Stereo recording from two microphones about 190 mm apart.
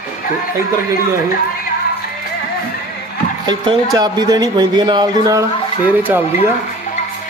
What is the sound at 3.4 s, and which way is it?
Speech, 20° right (ahead or behind).